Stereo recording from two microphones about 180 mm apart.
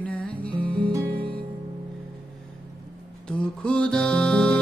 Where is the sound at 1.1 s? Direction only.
55° right (ahead or behind).